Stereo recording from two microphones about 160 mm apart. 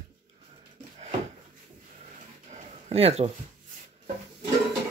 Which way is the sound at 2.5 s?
40° right (ahead or behind).